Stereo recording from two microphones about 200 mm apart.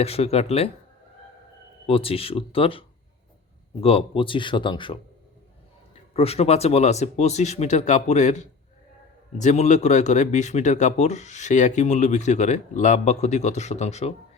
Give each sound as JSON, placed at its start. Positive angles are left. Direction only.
{"t": 0.0, "sound": "speech", "side_deg": 30}
{"t": 1.9, "sound": "speech", "side_deg": 30}
{"t": 6.1, "sound": "speech", "side_deg": 30}